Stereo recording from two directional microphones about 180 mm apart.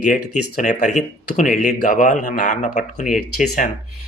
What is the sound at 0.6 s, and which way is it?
Speech, 45° left (ahead or behind).